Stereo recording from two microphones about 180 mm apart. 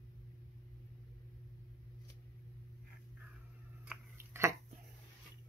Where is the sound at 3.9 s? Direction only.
15° right (ahead or behind).